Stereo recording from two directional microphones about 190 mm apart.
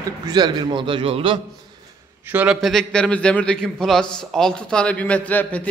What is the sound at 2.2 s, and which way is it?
A man's voice, 5° right (ahead or behind).